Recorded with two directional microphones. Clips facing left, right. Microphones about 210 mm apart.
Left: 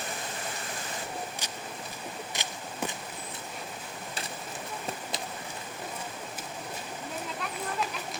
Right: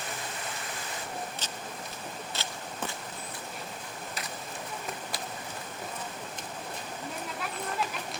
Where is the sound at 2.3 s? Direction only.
15° left (ahead or behind).